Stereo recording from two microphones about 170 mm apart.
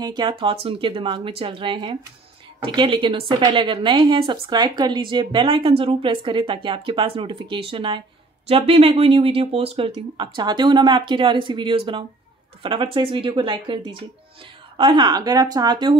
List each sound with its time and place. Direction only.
0.0 s a woman's voice: 25° right (ahead or behind)